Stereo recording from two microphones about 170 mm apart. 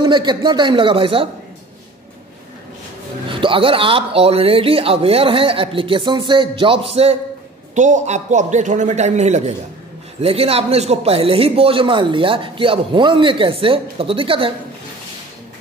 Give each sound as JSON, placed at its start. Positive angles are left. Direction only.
{"t": 0.0, "sound": "a man's voice", "side_deg": -25}
{"t": 3.3, "sound": "a man's voice", "side_deg": -30}